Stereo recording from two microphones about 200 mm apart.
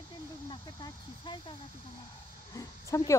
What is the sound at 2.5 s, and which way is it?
Dog, 20° left (ahead or behind).